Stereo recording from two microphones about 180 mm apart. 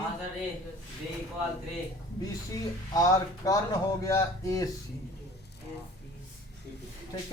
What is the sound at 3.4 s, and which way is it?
Speech, 15° left (ahead or behind).